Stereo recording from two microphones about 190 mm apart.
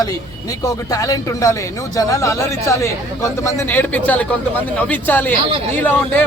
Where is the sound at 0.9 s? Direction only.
20° left (ahead or behind).